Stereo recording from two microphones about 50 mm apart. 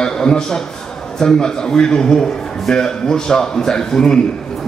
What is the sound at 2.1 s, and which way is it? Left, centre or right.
A man's voice, centre.